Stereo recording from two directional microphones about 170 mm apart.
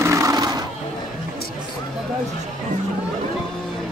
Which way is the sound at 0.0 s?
20° right (ahead or behind).